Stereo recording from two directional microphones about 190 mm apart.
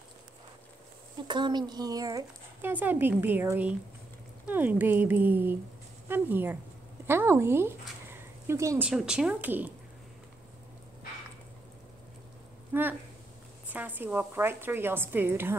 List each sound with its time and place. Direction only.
1.2 s speech: 25° right (ahead or behind)
12.7 s speech: 10° right (ahead or behind)